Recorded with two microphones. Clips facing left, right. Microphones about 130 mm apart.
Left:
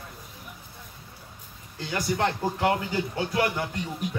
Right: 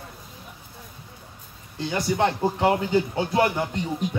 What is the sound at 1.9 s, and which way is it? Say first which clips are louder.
A man's voice: right 3 dB; 25° right (ahead or behind).